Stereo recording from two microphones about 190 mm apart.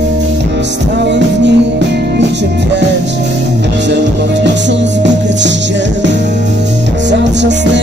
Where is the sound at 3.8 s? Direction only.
70° right (ahead or behind).